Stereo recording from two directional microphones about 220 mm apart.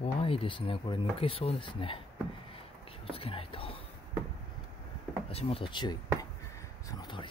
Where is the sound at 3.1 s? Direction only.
25° left (ahead or behind).